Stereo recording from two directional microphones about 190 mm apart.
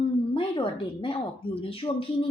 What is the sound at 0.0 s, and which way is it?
A woman's voice, 25° left (ahead or behind).